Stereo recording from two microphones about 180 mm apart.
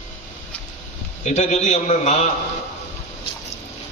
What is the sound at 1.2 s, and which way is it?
A man's voice, 40° left (ahead or behind).